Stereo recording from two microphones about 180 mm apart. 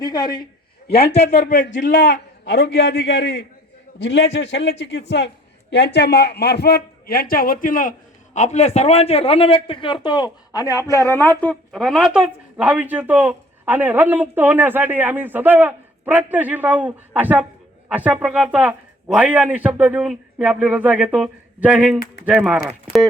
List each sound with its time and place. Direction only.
0.0 s a man's voice: 20° left (ahead or behind)
1.0 s a man's voice: 65° left (ahead or behind)
1.4 s a man's voice: 45° left (ahead or behind); by 23.0 s 5° right (ahead or behind)